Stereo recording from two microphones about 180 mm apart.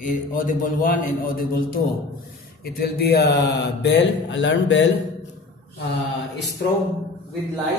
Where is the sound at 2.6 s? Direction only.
60° left (ahead or behind); by 4.9 s 90° left.